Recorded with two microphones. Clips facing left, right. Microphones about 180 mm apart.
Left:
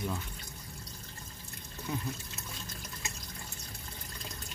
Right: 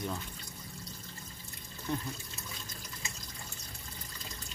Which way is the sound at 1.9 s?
5° left (ahead or behind).